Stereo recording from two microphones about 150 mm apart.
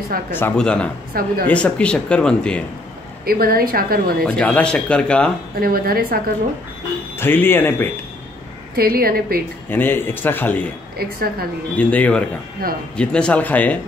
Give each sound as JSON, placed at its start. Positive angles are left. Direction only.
{"t": 0.3, "sound": "speech", "side_deg": 10}
{"t": 1.1, "sound": "a woman's voice", "side_deg": -80}
{"t": 1.5, "sound": "speech", "side_deg": 10}
{"t": 3.3, "sound": "a woman's voice", "side_deg": -80}
{"t": 4.4, "sound": "speech", "side_deg": 10}
{"t": 5.6, "sound": "a woman's voice", "side_deg": -80}
{"t": 7.2, "sound": "speech", "side_deg": 15}
{"t": 8.7, "sound": "a woman's voice", "side_deg": -90}
{"t": 9.7, "sound": "speech", "side_deg": 15}
{"t": 11.0, "sound": "a woman's voice", "side_deg": -85}
{"t": 11.7, "sound": "speech", "side_deg": 10}
{"t": 12.6, "sound": "a woman's voice", "side_deg": -85}
{"t": 12.9, "sound": "speech", "side_deg": 5}